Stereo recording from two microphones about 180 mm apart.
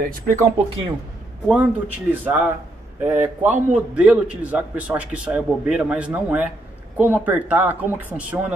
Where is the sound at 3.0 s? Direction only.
10° right (ahead or behind).